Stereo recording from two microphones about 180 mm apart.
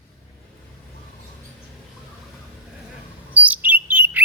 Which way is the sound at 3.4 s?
10° right (ahead or behind).